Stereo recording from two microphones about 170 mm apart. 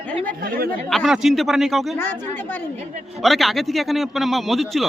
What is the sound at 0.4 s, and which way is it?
Speech, 55° right (ahead or behind).